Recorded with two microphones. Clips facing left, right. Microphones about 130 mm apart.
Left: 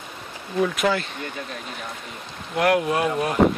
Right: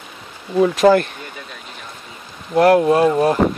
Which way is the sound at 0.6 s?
30° right (ahead or behind).